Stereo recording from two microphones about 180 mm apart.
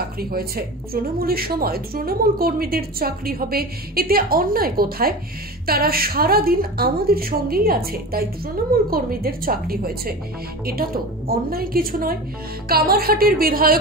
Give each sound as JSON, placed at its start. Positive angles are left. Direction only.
{"t": 0.2, "sound": "a woman's voice", "side_deg": -55}